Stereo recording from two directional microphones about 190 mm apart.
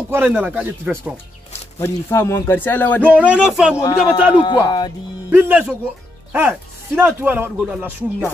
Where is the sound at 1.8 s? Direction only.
15° left (ahead or behind).